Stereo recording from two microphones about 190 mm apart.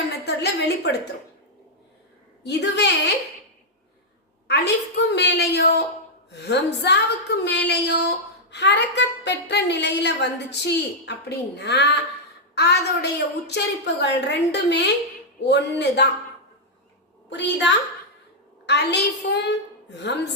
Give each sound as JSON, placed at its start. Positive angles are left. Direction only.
{"t": 0.3, "sound": "a woman's voice", "side_deg": 60}
{"t": 2.4, "sound": "a woman's voice", "side_deg": 60}
{"t": 4.4, "sound": "a woman's voice", "side_deg": 60}
{"t": 17.2, "sound": "a woman's voice", "side_deg": 70}